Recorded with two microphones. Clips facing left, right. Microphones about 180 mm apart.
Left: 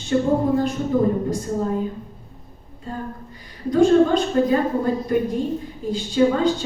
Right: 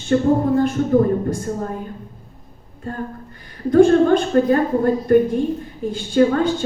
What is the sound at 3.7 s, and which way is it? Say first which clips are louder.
A woman's voice: right 3 dB; 55° right (ahead or behind).